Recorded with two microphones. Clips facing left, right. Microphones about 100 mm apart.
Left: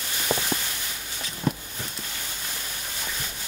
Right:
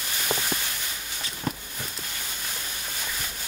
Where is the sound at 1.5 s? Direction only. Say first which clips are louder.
Left 4 dB; centre (ahead or behind).